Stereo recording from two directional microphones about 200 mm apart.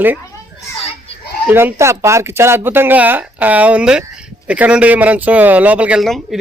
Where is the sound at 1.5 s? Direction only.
10° right (ahead or behind).